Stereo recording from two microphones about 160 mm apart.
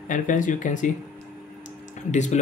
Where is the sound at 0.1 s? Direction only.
55° left (ahead or behind).